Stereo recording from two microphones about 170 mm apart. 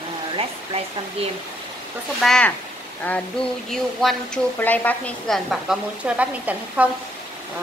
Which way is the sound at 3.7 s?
5° left (ahead or behind).